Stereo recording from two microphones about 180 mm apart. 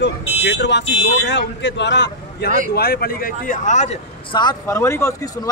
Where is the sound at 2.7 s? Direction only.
60° left (ahead or behind); by 4.0 s 40° left (ahead or behind).